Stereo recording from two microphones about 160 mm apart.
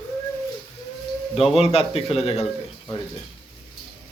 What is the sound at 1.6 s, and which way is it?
Speech, 40° left (ahead or behind).